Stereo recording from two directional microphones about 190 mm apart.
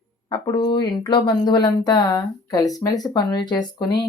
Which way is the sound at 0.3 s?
25° left (ahead or behind).